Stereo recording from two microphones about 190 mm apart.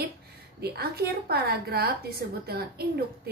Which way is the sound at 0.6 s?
55° right (ahead or behind).